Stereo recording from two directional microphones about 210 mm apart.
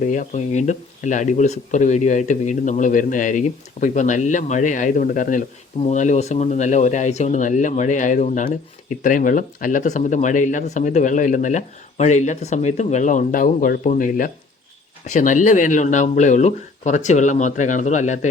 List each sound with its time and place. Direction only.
0.0 s speech: 35° left (ahead or behind)